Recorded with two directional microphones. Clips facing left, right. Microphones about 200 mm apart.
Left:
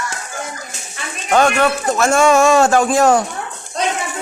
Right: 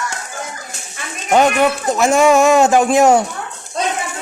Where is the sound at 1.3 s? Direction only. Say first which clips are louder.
Right 1 dB; 15° right (ahead or behind).